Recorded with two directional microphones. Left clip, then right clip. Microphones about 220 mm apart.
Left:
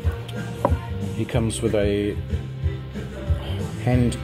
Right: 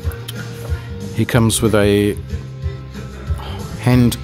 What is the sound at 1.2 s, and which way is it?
Speech, 35° right (ahead or behind).